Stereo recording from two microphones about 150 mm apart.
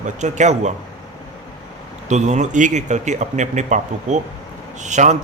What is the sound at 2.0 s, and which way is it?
Speech, 50° right (ahead or behind).